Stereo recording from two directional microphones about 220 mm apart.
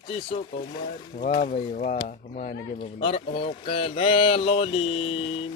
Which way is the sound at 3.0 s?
25° left (ahead or behind).